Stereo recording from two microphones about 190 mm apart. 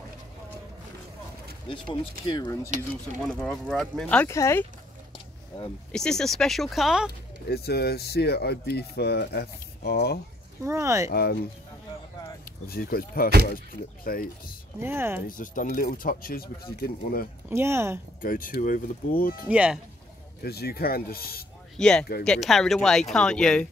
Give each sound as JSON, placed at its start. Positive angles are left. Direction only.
{"t": 1.7, "sound": "speech", "side_deg": 25}
{"t": 3.3, "sound": "speech", "side_deg": 5}
{"t": 5.9, "sound": "speech", "side_deg": 5}
{"t": 7.4, "sound": "speech", "side_deg": 55}
{"t": 10.6, "sound": "speech", "side_deg": -15}
{"t": 11.1, "sound": "speech", "side_deg": 55}
{"t": 12.6, "sound": "speech", "side_deg": 50}
{"t": 14.8, "sound": "speech", "side_deg": -15}
{"t": 15.2, "sound": "speech", "side_deg": 45}
{"t": 17.5, "sound": "speech", "side_deg": -15}
{"t": 18.2, "sound": "speech", "side_deg": 45}
{"t": 19.4, "sound": "speech", "side_deg": -5}
{"t": 20.4, "sound": "speech", "side_deg": 55}
{"t": 21.7, "sound": "speech", "side_deg": 5}